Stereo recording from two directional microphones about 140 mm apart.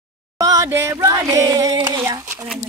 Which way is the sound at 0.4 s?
25° right (ahead or behind).